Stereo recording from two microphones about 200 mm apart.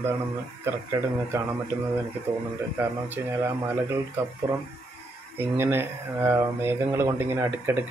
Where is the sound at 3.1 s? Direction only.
15° right (ahead or behind).